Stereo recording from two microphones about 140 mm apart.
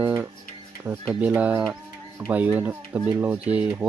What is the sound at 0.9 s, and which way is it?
Speech, 15° right (ahead or behind).